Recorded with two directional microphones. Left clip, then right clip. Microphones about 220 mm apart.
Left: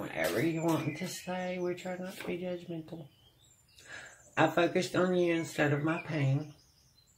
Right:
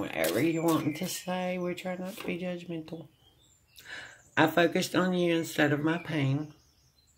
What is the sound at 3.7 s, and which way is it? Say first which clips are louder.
Speech: right 4 dB; 40° right (ahead or behind).